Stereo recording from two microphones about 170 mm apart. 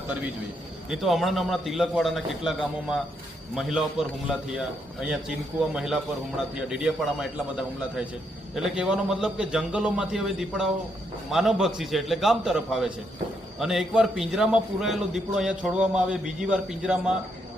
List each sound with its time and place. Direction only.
0.9 s a man's voice: centre (ahead or behind)